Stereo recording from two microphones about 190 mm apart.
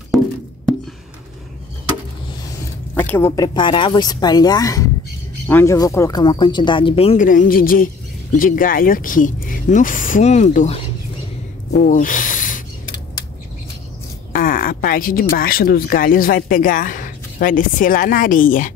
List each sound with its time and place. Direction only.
2.9 s a woman's voice: 10° left (ahead or behind); by 7.2 s 30° left (ahead or behind)
7.2 s speech: 45° left (ahead or behind)
11.7 s snake: 45° left (ahead or behind)
14.3 s speech: 50° left (ahead or behind)